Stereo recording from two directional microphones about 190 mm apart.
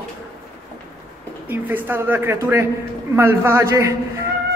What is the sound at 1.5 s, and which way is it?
Speech, 10° right (ahead or behind).